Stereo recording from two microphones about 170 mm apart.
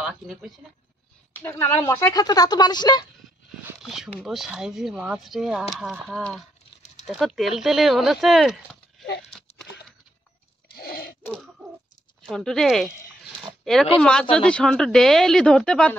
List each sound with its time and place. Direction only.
0.0 s speech: 5° right (ahead or behind)
1.3 s speech: 15° left (ahead or behind)
3.8 s speech: centre (ahead or behind)
10.7 s a sound: 65° left (ahead or behind)
11.2 s bird: 5° left (ahead or behind)
12.2 s speech: 5° left (ahead or behind)